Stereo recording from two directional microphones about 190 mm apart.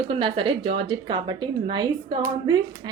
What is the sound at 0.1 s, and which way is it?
A woman's voice, 25° right (ahead or behind).